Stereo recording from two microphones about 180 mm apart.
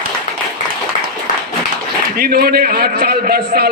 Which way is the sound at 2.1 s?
55° right (ahead or behind).